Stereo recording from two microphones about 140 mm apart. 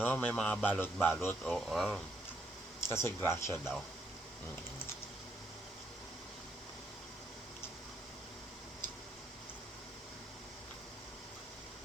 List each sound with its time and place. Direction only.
0.0 s speech: 10° left (ahead or behind)
1.5 s speech: centre (ahead or behind)
2.8 s speech: 20° left (ahead or behind)